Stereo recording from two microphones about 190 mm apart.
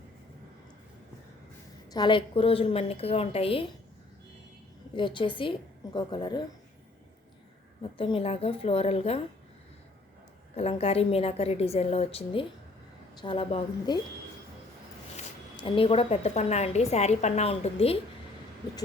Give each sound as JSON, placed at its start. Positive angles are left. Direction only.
{"t": 1.9, "sound": "a woman's voice", "side_deg": 25}
{"t": 4.9, "sound": "a woman's voice", "side_deg": 25}
{"t": 7.8, "sound": "a woman's voice", "side_deg": 25}
{"t": 10.5, "sound": "a woman's voice", "side_deg": 30}
{"t": 15.6, "sound": "a woman's voice", "side_deg": 30}